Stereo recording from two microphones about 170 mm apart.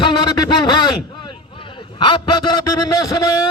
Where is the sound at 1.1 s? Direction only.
30° left (ahead or behind).